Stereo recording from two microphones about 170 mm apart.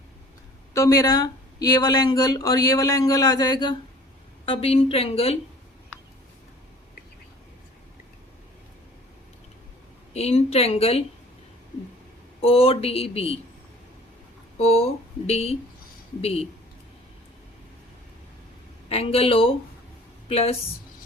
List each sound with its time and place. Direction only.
0.7 s speech: 20° left (ahead or behind); by 5.4 s 35° left (ahead or behind)
10.2 s speech: 35° left (ahead or behind)
12.4 s speech: 35° left (ahead or behind)
14.6 s speech: 35° left (ahead or behind)
18.9 s speech: 35° left (ahead or behind)